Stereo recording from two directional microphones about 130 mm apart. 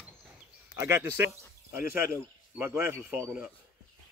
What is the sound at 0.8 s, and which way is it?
Speech, 15° right (ahead or behind).